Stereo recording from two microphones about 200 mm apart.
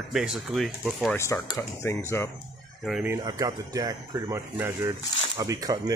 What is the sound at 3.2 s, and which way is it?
Speech, 20° right (ahead or behind).